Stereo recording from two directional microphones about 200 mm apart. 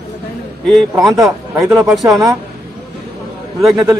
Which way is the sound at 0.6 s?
Centre (ahead or behind).